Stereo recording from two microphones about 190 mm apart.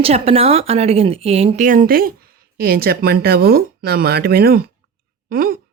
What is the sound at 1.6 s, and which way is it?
A woman's voice, 45° right (ahead or behind).